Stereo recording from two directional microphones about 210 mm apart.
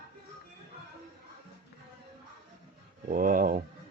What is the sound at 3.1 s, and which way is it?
Speech, 40° right (ahead or behind).